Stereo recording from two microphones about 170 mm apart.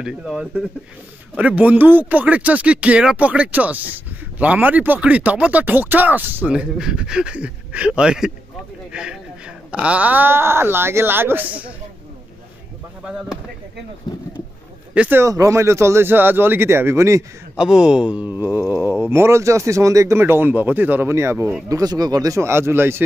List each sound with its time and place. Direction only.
0.0 s speech: 5° right (ahead or behind)
13.0 s speech: centre (ahead or behind)
14.1 s speech: 25° left (ahead or behind)
15.0 s speech: 10° right (ahead or behind)
17.6 s speech: 5° right (ahead or behind)